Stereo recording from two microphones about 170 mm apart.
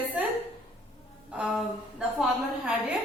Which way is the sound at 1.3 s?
5° right (ahead or behind).